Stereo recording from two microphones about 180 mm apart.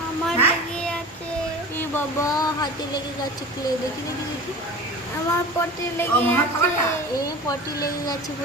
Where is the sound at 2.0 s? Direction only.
15° left (ahead or behind).